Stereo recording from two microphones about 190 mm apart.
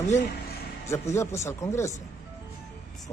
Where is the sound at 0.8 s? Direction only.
15° left (ahead or behind).